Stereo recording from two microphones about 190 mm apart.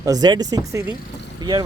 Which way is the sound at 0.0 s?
20° right (ahead or behind).